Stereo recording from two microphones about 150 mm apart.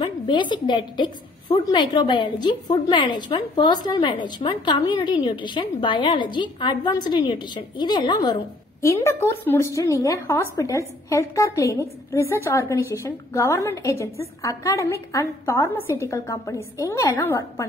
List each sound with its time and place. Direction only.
0.0 s a woman's voice: 30° left (ahead or behind)
8.8 s a woman's voice: 20° left (ahead or behind)